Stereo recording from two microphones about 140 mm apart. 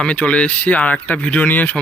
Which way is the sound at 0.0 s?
10° left (ahead or behind).